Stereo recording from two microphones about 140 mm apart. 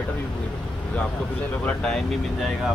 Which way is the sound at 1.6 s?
5° left (ahead or behind).